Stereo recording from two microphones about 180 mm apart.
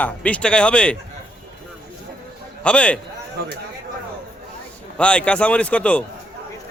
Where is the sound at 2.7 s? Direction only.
5° left (ahead or behind).